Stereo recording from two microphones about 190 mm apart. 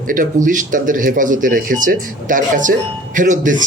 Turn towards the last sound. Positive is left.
turn(degrees=-45)  # may be behind; listen again after turning